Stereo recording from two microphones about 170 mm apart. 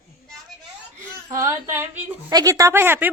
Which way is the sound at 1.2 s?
20° right (ahead or behind).